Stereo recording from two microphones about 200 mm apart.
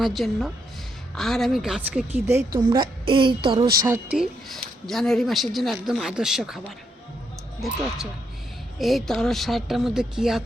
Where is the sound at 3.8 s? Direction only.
10° right (ahead or behind).